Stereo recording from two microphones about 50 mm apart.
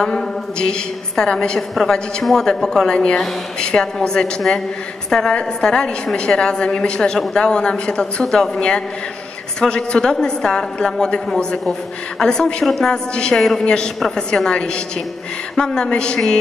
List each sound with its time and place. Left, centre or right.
0.0 s a woman's voice: centre
5.3 s a woman's voice: centre
13.1 s a woman's voice: centre
13.4 s a woman's voice: centre
14.1 s a woman's voice: centre